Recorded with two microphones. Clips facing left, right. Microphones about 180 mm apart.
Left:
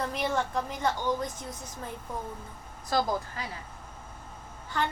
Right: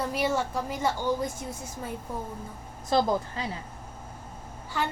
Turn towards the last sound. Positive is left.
turn(degrees=-5)  # may be behind; listen again after turning